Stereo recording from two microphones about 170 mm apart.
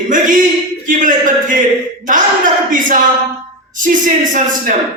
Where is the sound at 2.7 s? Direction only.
50° right (ahead or behind).